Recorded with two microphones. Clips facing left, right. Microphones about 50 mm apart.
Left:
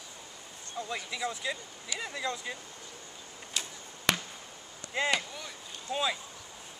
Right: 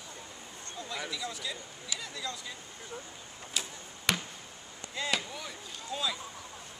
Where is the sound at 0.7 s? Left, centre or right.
Left.